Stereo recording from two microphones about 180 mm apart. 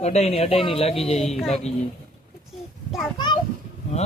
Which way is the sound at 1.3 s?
Centre (ahead or behind).